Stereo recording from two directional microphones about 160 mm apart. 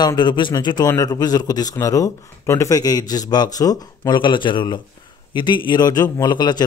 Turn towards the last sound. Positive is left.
turn(degrees=25)  # may be behind; listen again after turning